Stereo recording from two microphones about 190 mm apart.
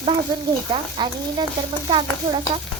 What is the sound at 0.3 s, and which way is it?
Speech, 25° right (ahead or behind).